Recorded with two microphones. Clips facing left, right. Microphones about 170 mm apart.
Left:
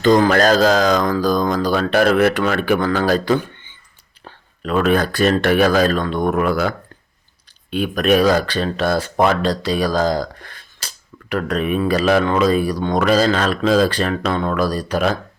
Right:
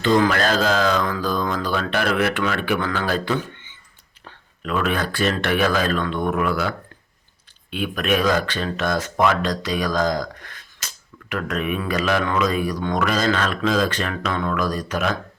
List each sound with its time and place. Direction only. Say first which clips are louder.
0.0 s speech: left 5 dB; 40° left (ahead or behind)